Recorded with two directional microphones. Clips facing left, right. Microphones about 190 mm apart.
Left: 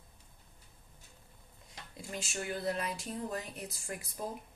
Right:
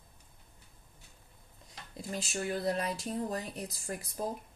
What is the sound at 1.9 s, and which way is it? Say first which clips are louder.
Speech: right 4 dB; 35° right (ahead or behind).